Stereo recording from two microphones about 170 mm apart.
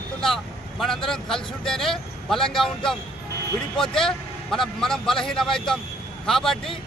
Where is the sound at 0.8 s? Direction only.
Centre (ahead or behind).